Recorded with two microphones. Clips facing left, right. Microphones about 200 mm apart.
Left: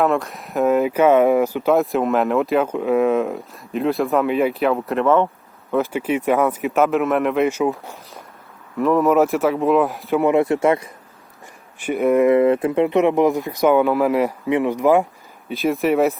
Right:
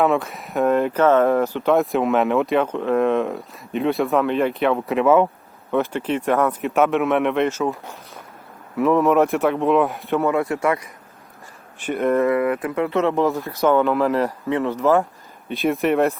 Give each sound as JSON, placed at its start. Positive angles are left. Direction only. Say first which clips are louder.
{"t": 0.0, "sound": "speech", "louder": "even", "side_deg": 0}
{"t": 5.7, "sound": "speech", "louder": "left 1 dB", "side_deg": 5}
{"t": 8.8, "sound": "speech", "louder": "left 1 dB", "side_deg": 0}
{"t": 10.2, "sound": "speech", "louder": "left 4 dB", "side_deg": 20}
{"t": 11.8, "sound": "speech", "louder": "left 3 dB", "side_deg": 10}
{"t": 12.3, "sound": "speech", "louder": "left 5 dB", "side_deg": 25}
{"t": 15.4, "sound": "speech", "louder": "left 1 dB", "side_deg": 0}